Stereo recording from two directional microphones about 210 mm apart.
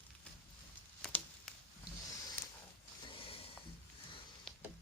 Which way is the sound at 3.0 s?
25° left (ahead or behind).